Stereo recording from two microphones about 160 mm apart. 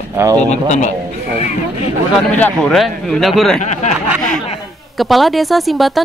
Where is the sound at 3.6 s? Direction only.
50° left (ahead or behind).